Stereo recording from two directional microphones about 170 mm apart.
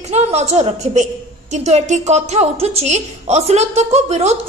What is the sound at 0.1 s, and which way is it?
A woman's voice, 40° right (ahead or behind).